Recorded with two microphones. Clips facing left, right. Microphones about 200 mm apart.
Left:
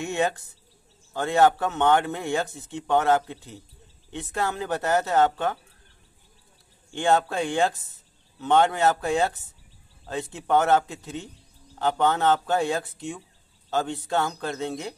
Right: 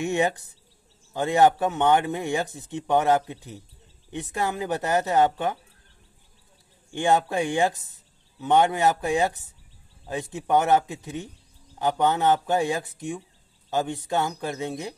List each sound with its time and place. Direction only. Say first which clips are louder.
0.0 s speech: right 2 dB; 15° right (ahead or behind)
6.9 s speech: even; 15° right (ahead or behind)